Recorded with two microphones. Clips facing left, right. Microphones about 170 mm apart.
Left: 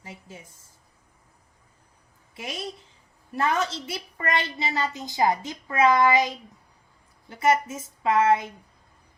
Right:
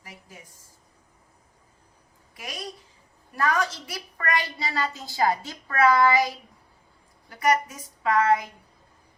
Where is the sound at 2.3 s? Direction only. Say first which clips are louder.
Left 3 dB; 25° left (ahead or behind).